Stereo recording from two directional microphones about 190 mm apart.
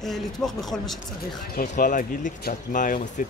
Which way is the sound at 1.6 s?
45° left (ahead or behind).